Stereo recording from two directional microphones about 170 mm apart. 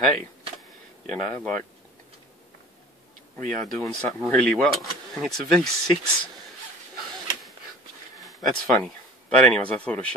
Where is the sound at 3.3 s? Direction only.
45° right (ahead or behind).